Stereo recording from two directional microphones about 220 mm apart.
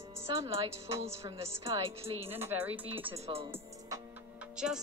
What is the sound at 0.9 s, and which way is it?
Music, 15° right (ahead or behind).